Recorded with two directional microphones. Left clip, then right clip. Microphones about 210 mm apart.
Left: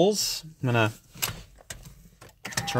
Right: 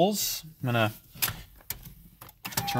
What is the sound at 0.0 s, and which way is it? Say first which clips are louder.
Speech: left 3 dB; 30° left (ahead or behind).